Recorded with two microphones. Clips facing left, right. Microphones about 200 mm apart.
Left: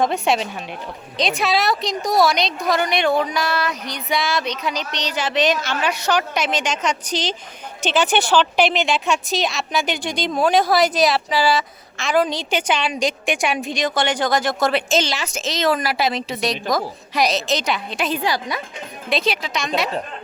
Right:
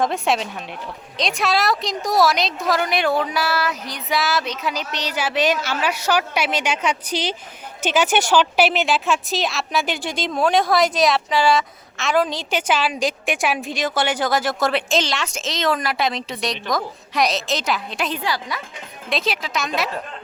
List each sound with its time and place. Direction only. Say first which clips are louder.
0.0 s a woman's voice: left 1 dB; centre (ahead or behind)
18.2 s a woman's voice: left 3 dB; 20° left (ahead or behind)
19.1 s a woman's voice: left 2 dB; centre (ahead or behind)